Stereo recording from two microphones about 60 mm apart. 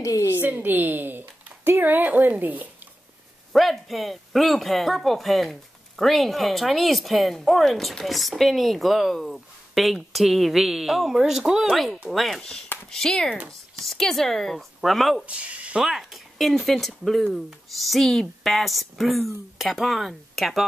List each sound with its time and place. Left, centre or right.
0.0 s a woman's voice: left
0.4 s speech: right
3.5 s speech: centre
11.7 s speech: centre
15.2 s speech: right
15.8 s speech: centre